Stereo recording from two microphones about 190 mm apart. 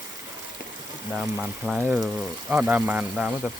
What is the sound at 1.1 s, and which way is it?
Speech, centre (ahead or behind).